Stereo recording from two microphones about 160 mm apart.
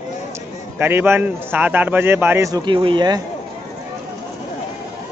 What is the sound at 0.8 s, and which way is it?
A man's voice, 15° right (ahead or behind).